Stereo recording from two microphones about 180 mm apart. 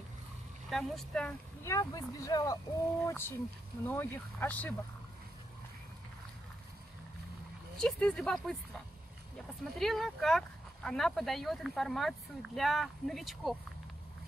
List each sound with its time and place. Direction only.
0.7 s speech: centre (ahead or behind)
1.6 s speech: 20° left (ahead or behind)
7.7 s speech: 5° left (ahead or behind)